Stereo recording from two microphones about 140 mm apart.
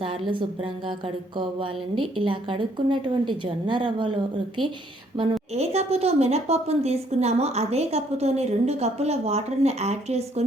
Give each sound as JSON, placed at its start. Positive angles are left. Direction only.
{"t": 0.3, "sound": "a woman's voice", "side_deg": -35}
{"t": 5.2, "sound": "a woman's voice", "side_deg": -35}
{"t": 5.5, "sound": "a woman's voice", "side_deg": -50}